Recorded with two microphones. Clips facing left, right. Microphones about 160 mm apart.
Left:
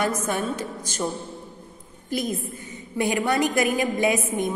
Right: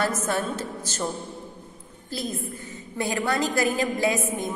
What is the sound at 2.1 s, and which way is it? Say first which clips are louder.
A woman's voice: left 4 dB; 20° left (ahead or behind).